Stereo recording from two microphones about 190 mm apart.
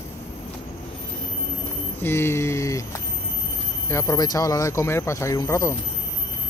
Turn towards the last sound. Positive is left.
turn(degrees=15)  # may be behind; listen again after turning